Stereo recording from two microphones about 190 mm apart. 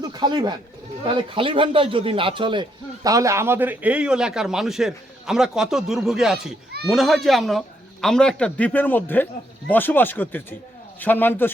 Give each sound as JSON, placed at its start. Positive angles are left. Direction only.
{"t": 0.0, "sound": "a man's voice", "side_deg": -20}